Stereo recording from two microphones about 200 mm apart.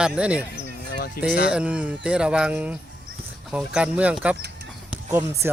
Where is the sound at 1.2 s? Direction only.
50° left (ahead or behind).